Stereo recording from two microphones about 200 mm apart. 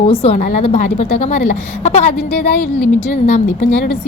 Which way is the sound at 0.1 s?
30° left (ahead or behind).